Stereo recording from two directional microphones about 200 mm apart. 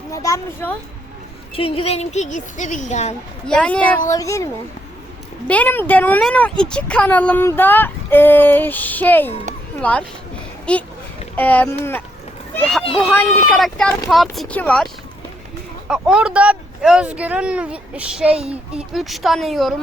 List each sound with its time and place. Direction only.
0.1 s speech: 15° left (ahead or behind)
1.5 s speech: 30° left (ahead or behind)
3.4 s speech: 5° left (ahead or behind)
5.5 s speech: 10° left (ahead or behind)
10.7 s a child's voice: 5° left (ahead or behind)
15.9 s speech: 5° right (ahead or behind)